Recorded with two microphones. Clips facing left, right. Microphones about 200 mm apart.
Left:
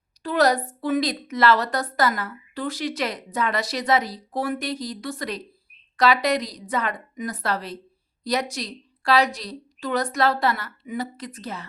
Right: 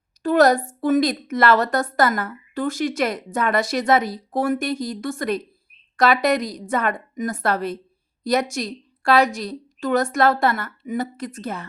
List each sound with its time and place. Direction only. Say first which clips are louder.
0.2 s a woman's voice: right 5 dB; 50° right (ahead or behind)